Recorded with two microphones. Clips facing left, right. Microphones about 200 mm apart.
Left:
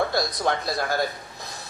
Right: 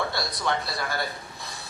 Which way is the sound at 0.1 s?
45° left (ahead or behind).